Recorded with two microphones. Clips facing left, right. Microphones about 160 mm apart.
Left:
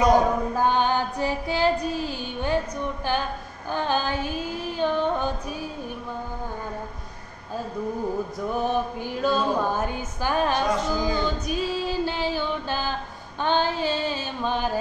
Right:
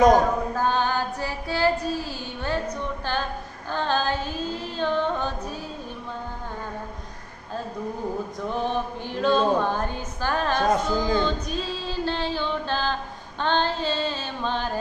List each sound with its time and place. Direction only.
0.6 s child singing: 15° left (ahead or behind)
3.7 s music: 15° left (ahead or behind)
8.5 s a sound: 10° left (ahead or behind)
10.7 s music: 55° right (ahead or behind)
11.2 s female singing: 10° left (ahead or behind)